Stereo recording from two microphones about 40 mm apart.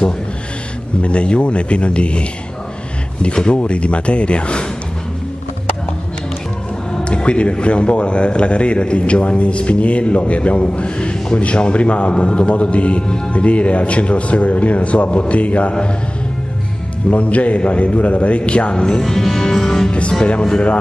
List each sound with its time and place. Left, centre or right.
1.0 s a man's voice: left
7.1 s a man's voice: left
17.1 s a man's voice: left
19.0 s music: centre
19.9 s a man's voice: left